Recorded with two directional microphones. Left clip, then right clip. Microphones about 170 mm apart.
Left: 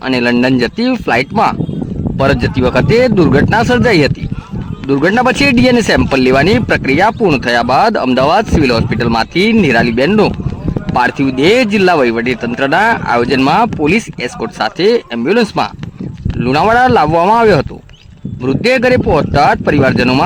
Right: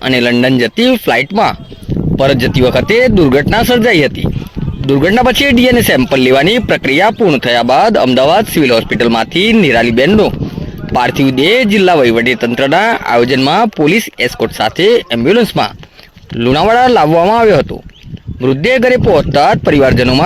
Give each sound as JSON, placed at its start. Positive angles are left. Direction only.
{"t": 0.0, "sound": "speech", "side_deg": -10}
{"t": 7.3, "sound": "speech", "side_deg": 0}
{"t": 7.5, "sound": "speech", "side_deg": -10}